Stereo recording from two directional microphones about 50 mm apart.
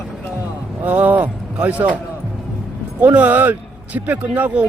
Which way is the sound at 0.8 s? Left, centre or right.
Right.